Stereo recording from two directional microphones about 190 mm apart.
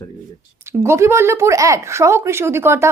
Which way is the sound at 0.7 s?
15° right (ahead or behind).